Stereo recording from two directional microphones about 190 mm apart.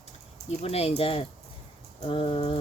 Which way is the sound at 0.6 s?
30° left (ahead or behind).